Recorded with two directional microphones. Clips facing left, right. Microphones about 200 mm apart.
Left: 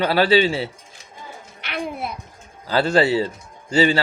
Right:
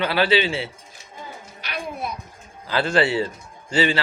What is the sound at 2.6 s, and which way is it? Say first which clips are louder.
A man's voice: left 3 dB; 40° left (ahead or behind).